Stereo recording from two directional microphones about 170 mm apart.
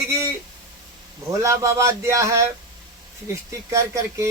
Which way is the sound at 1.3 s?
20° right (ahead or behind).